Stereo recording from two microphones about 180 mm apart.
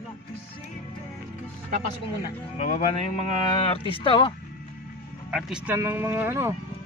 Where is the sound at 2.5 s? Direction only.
40° left (ahead or behind).